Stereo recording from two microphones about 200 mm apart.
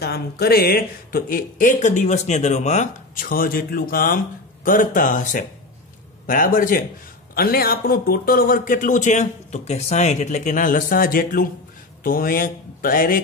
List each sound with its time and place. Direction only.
0.0 s speech: 50° left (ahead or behind)